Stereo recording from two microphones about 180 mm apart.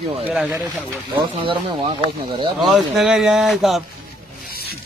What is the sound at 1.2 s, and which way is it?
Speech, 30° right (ahead or behind).